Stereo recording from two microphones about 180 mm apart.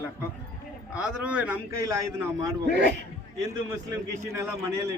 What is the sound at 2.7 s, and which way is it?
Speech, 70° right (ahead or behind).